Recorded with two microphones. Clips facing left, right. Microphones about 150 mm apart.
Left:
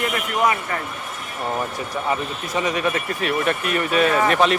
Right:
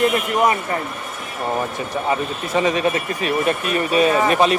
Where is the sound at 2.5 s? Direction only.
25° right (ahead or behind).